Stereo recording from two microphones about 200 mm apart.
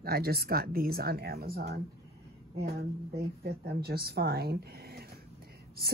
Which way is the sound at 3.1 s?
50° right (ahead or behind).